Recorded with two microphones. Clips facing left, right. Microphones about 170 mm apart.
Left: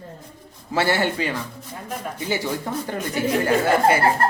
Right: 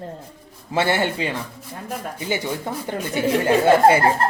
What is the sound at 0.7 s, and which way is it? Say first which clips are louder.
Speech: even; 20° right (ahead or behind).